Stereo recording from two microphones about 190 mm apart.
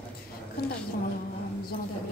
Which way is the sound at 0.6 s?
55° left (ahead or behind).